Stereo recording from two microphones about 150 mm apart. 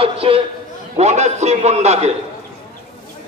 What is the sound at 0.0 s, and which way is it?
A man's voice, 40° right (ahead or behind).